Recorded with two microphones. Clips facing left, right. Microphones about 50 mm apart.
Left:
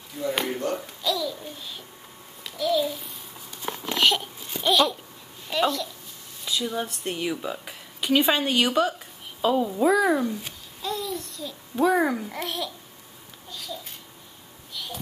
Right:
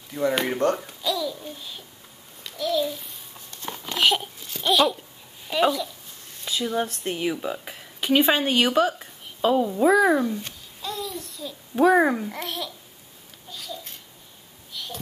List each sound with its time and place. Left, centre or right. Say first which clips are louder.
0.7 s a child's voice: even; centre
2.4 s babbling: left 1 dB; centre
4.6 s a child's voice: right 1 dB; centre
11.7 s a child's voice: right 4 dB; centre
12.3 s a child's voice: left 1 dB; centre
13.5 s babbling: even; centre
14.7 s a sound: even; centre